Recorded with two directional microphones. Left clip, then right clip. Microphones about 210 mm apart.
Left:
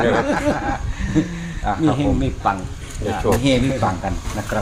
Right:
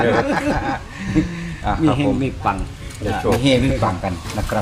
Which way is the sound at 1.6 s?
30° right (ahead or behind).